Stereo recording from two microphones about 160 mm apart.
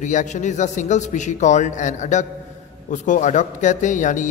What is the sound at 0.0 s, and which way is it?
A man's voice, 50° left (ahead or behind).